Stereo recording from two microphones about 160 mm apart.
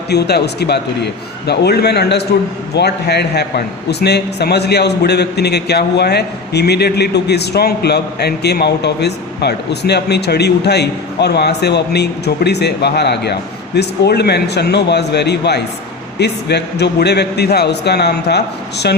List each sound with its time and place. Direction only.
0.1 s a man's voice: 90° left